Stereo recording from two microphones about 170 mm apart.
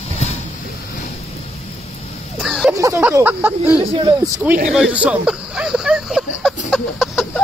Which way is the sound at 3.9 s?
30° right (ahead or behind).